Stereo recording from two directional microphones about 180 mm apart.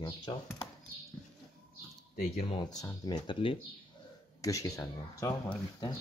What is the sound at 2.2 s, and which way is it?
Speech, 35° left (ahead or behind).